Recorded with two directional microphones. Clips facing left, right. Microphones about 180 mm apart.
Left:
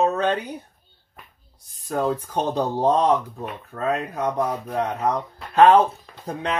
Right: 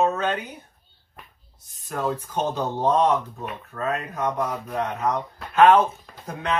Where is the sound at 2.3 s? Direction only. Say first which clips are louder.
Left 2 dB; 35° left (ahead or behind).